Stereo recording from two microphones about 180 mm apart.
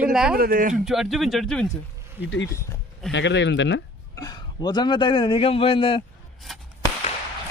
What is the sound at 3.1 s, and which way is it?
Speech, 80° left.